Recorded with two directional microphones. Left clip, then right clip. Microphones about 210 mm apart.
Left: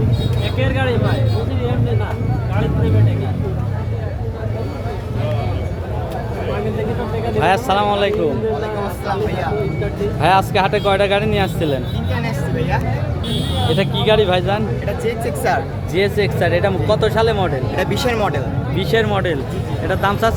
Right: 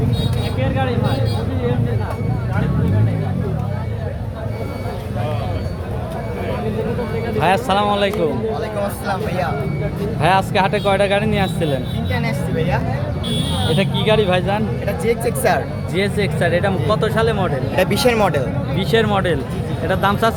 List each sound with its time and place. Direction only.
0.6 s speech: 50° left (ahead or behind)
7.3 s speech: centre (ahead or behind)
10.2 s speech: 5° left (ahead or behind)
13.7 s speech: 5° left (ahead or behind)
15.0 s speech: 25° right (ahead or behind)
16.0 s speech: 5° left (ahead or behind)
17.7 s speech: 30° right (ahead or behind)
18.8 s speech: centre (ahead or behind)